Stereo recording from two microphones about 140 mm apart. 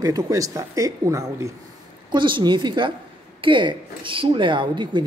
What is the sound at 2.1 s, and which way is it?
A woman's voice, 35° right (ahead or behind).